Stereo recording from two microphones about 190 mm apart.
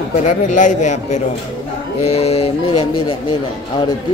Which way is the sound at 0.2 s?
40° left (ahead or behind).